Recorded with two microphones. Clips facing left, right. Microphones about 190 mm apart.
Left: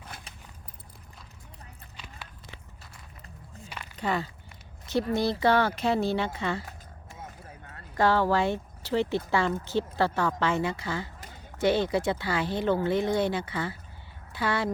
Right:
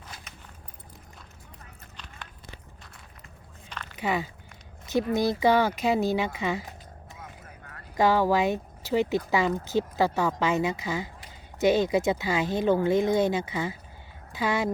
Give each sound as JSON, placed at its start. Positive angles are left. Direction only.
{"t": 3.7, "sound": "a sound", "side_deg": 10}
{"t": 4.0, "sound": "speech", "side_deg": -15}
{"t": 7.9, "sound": "speech", "side_deg": -15}